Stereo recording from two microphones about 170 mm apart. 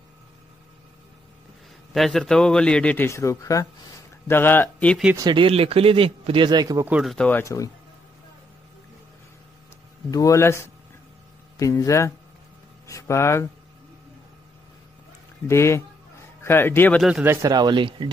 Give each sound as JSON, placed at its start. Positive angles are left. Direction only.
{"t": 2.0, "sound": "a man's voice", "side_deg": 0}
{"t": 5.1, "sound": "a man's voice", "side_deg": -25}
{"t": 6.9, "sound": "a man's voice", "side_deg": -5}
{"t": 7.2, "sound": "speech", "side_deg": 10}
{"t": 10.1, "sound": "speech", "side_deg": 20}
{"t": 15.4, "sound": "speech", "side_deg": 15}
{"t": 17.0, "sound": "a man's voice", "side_deg": -10}